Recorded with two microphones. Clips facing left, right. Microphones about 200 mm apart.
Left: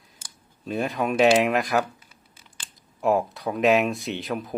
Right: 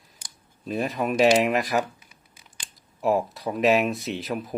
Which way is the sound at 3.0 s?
Centre (ahead or behind).